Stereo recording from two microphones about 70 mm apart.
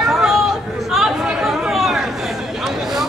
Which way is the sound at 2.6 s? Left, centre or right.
Centre.